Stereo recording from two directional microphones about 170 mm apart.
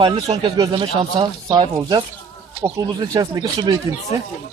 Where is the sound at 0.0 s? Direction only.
30° right (ahead or behind).